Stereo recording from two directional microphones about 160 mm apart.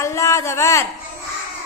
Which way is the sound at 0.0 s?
20° left (ahead or behind).